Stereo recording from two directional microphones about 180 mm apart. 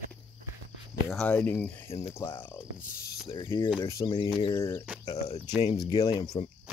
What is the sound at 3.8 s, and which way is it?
Speech, 20° left (ahead or behind).